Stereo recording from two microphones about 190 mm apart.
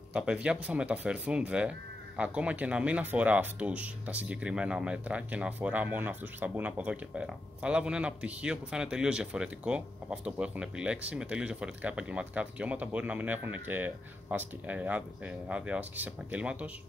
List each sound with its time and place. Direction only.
0.1 s speech: 5° right (ahead or behind)